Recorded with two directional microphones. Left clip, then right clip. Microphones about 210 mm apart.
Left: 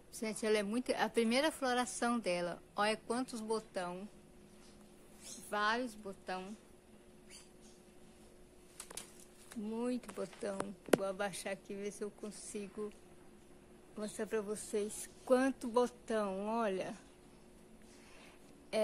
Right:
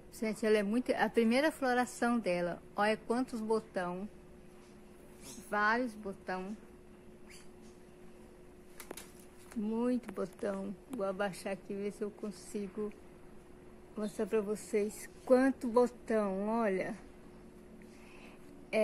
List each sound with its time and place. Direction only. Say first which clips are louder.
0.2 s a woman's voice: right 4 dB; 5° left (ahead or behind)
5.5 s a woman's voice: right 4 dB; 5° right (ahead or behind)
9.7 s a woman's voice: right 5 dB; centre (ahead or behind)
13.9 s a woman's voice: right 5 dB; centre (ahead or behind)